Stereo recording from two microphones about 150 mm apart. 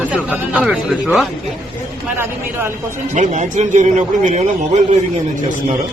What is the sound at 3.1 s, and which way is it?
A man's voice, 55° right (ahead or behind).